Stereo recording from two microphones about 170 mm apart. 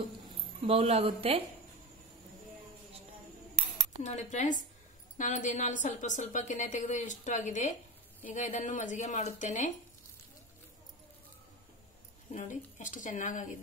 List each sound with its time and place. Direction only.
0.7 s speech: 35° right (ahead or behind)
4.0 s a woman's voice: 40° left (ahead or behind)
12.3 s a woman's voice: 45° left (ahead or behind)